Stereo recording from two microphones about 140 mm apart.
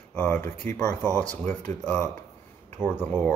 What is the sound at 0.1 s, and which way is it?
Speech, 10° left (ahead or behind).